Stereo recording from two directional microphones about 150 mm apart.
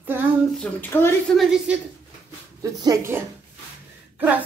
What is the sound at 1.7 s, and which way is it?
Speech, 10° right (ahead or behind).